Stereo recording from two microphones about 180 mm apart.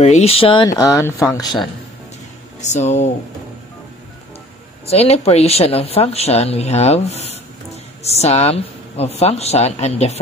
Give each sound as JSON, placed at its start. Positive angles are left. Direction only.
{"t": 0.0, "sound": "speech", "side_deg": 35}
{"t": 0.7, "sound": "speech", "side_deg": 15}
{"t": 2.6, "sound": "speech", "side_deg": 40}
{"t": 4.8, "sound": "speech", "side_deg": 35}